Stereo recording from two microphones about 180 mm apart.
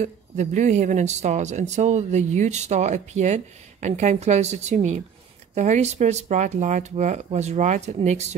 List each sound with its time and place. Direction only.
0.0 s speech: 40° right (ahead or behind)